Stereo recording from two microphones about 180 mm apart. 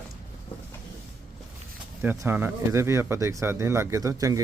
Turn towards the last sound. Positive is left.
turn(degrees=-20)  # may be behind; listen again after turning